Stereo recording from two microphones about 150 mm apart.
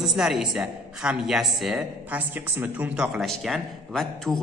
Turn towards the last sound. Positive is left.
turn(degrees=0)  # may be behind; listen again after turning